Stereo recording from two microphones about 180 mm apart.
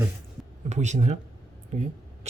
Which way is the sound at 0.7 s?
40° right (ahead or behind).